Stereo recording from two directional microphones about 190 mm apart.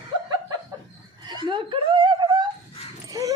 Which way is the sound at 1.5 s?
25° right (ahead or behind).